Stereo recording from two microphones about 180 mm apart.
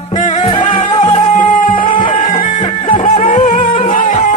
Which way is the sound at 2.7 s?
30° left (ahead or behind).